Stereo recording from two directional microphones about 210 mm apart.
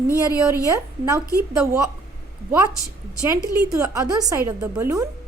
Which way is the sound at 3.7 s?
15° right (ahead or behind).